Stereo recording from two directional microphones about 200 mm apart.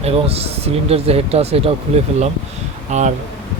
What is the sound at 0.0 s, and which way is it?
Speech, 30° right (ahead or behind).